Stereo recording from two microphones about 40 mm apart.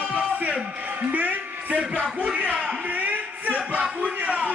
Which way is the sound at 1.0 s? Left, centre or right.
Right.